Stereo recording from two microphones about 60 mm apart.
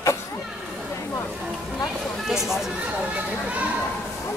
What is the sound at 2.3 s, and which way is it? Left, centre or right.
Speech, centre.